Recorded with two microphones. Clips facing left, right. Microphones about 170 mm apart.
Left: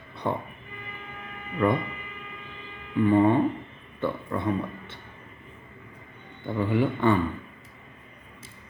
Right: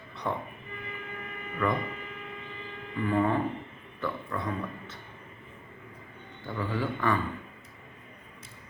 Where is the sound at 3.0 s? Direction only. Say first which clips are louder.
Left 6 dB; 30° left (ahead or behind).